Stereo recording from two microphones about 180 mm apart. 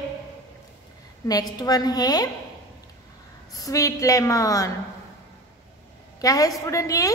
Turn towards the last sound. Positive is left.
turn(degrees=15)  # may be behind; listen again after turning